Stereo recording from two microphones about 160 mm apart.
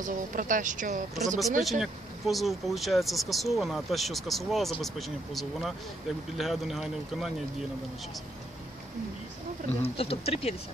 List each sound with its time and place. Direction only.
0.0 s speech: 55° right (ahead or behind)
1.6 s speech: centre (ahead or behind)
9.8 s speech: 40° left (ahead or behind)